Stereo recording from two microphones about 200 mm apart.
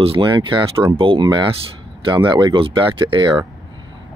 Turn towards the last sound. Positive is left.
turn(degrees=-25)  # may be behind; listen again after turning